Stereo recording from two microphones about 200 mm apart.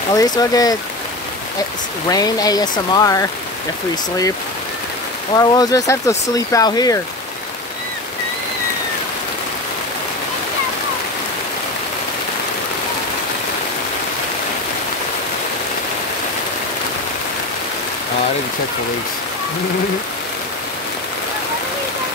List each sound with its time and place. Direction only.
0.1 s speech: 20° left (ahead or behind)
2.0 s speech: 20° left (ahead or behind)
5.3 s speech: 20° left (ahead or behind)